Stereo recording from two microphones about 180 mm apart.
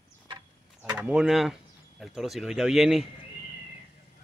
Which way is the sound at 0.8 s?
5° right (ahead or behind).